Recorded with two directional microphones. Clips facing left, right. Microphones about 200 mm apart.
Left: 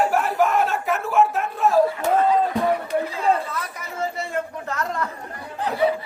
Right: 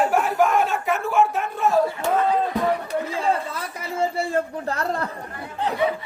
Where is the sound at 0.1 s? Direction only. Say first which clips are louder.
Right 1 dB; centre (ahead or behind).